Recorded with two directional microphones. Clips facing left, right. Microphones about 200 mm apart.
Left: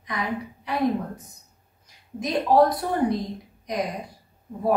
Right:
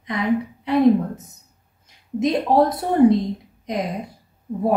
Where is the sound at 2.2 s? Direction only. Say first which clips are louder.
Right 2 dB; 25° right (ahead or behind).